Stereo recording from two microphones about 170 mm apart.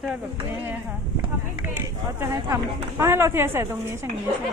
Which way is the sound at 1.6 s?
15° right (ahead or behind).